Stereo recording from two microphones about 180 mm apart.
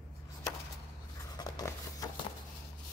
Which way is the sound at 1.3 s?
20° left (ahead or behind).